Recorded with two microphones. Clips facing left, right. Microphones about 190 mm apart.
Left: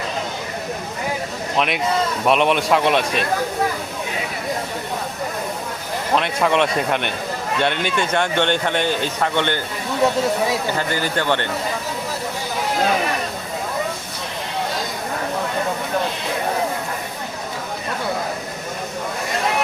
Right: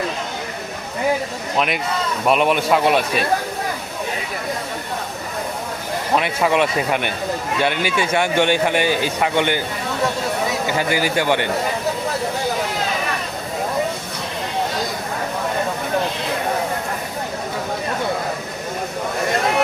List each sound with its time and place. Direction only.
1.5 s a man's voice: centre (ahead or behind)
6.1 s a man's voice: 5° right (ahead or behind)
10.8 s a man's voice: 10° right (ahead or behind)